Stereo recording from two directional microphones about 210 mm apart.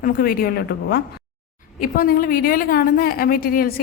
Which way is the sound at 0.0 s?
45° left (ahead or behind).